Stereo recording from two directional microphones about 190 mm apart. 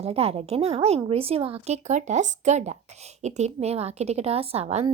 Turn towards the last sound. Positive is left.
turn(degrees=-35)  # may be behind; listen again after turning